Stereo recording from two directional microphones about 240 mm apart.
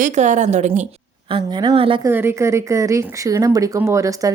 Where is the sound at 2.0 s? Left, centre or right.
Centre.